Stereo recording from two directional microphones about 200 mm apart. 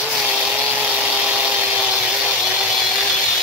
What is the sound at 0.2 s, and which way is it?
Power tool, 5° right (ahead or behind).